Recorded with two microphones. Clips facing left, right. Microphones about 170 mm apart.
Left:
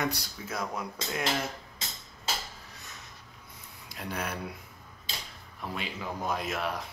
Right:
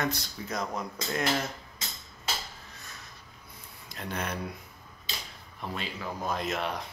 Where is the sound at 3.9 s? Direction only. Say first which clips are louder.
Right 1 dB; 10° left (ahead or behind).